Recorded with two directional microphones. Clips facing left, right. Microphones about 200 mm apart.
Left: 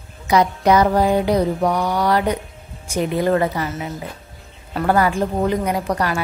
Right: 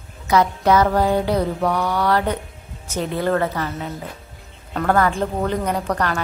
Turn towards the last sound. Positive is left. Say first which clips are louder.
# left 1 dB
turn(degrees=10)  # may be behind; listen again after turning